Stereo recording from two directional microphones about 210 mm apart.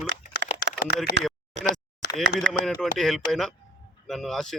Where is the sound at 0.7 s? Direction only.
60° right (ahead or behind).